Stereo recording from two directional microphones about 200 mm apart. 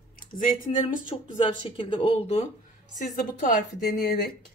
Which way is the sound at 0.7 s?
25° left (ahead or behind).